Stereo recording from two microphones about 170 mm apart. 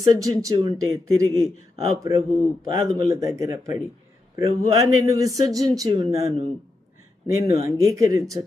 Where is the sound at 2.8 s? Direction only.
20° right (ahead or behind).